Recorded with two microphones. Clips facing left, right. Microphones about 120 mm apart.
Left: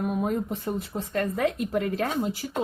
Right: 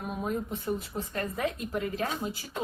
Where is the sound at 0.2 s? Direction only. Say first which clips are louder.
Left 5 dB; 60° left (ahead or behind).